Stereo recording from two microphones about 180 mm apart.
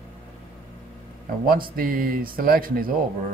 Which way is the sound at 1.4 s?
55° right (ahead or behind).